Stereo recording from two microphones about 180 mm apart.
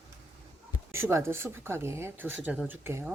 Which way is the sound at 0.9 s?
15° right (ahead or behind).